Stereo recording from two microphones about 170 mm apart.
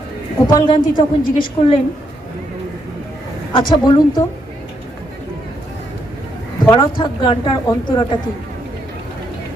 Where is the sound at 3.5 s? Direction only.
25° left (ahead or behind).